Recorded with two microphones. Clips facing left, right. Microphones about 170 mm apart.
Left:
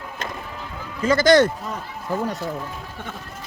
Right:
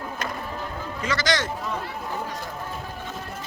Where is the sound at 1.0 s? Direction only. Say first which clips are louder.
Left 11 dB; 55° left (ahead or behind).